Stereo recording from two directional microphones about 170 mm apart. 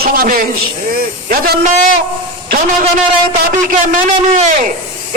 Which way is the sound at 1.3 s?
55° right (ahead or behind).